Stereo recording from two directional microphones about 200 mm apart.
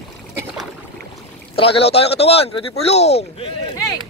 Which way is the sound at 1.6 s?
30° left (ahead or behind).